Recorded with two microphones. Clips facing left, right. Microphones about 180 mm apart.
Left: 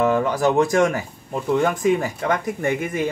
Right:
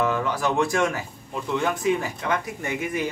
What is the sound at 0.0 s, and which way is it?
Speech, 50° left (ahead or behind).